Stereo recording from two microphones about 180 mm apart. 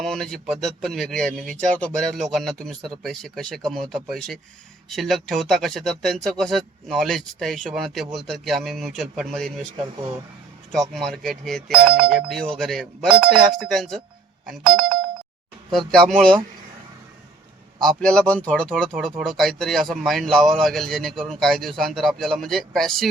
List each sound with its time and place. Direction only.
0.0 s speech: centre (ahead or behind)
9.7 s speech: 25° right (ahead or behind)
10.7 s speech: centre (ahead or behind)
11.8 s speech: 55° right (ahead or behind)
12.0 s speech: centre (ahead or behind)
17.7 s speech: 5° left (ahead or behind)